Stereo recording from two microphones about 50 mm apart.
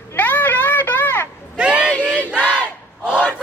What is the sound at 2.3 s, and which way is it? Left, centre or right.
Battle cry, right.